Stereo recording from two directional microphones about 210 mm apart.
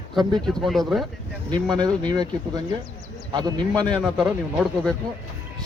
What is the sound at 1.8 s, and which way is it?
Speech, 20° right (ahead or behind).